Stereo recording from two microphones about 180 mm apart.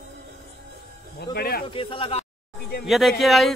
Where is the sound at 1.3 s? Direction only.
55° left (ahead or behind).